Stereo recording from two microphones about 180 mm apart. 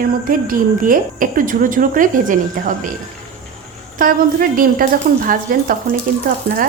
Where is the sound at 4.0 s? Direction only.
50° right (ahead or behind).